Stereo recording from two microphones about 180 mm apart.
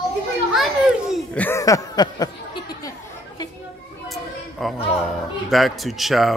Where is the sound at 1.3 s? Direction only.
15° left (ahead or behind).